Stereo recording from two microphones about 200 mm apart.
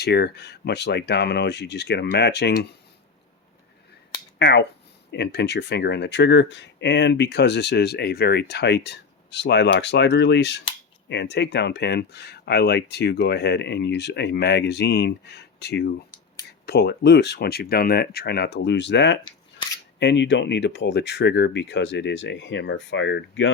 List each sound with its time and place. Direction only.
0.0 s speech: 55° left (ahead or behind)
4.4 s speech: 55° left (ahead or behind)